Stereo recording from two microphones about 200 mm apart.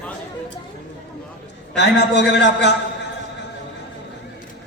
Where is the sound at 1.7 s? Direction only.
60° left (ahead or behind).